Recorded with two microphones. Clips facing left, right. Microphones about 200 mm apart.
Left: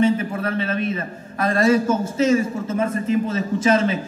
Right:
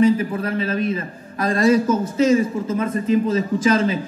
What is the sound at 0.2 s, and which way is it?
Speech, 30° right (ahead or behind).